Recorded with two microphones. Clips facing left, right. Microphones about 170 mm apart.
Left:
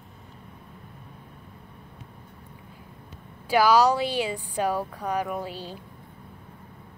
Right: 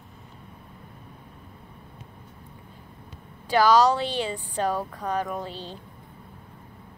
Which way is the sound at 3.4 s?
10° left (ahead or behind).